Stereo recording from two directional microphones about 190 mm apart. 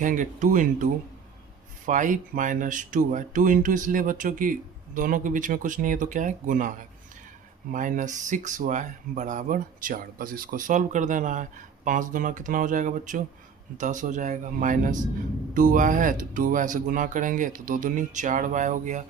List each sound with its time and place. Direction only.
0.0 s speech: 40° right (ahead or behind)
1.9 s speech: 40° right (ahead or behind)